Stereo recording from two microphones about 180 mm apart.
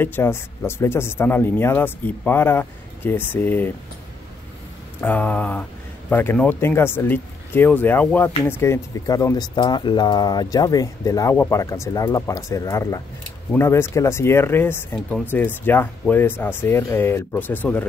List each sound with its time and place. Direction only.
0.0 s speech: 10° left (ahead or behind)
5.0 s speech: 10° left (ahead or behind)